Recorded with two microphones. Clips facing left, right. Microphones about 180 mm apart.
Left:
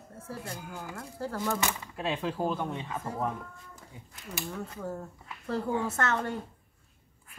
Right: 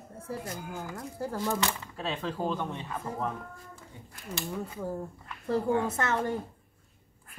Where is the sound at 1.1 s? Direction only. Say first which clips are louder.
Right 1 dB; 15° right (ahead or behind).